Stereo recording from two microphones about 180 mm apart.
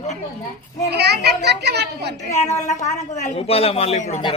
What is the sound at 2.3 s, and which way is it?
A woman's voice, 40° left (ahead or behind).